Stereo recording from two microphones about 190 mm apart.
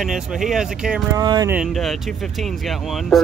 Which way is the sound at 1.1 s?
20° right (ahead or behind).